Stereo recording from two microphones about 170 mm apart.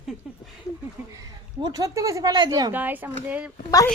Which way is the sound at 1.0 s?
10° right (ahead or behind).